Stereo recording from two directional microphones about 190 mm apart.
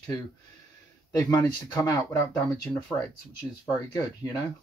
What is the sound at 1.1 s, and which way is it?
Speech, 10° left (ahead or behind).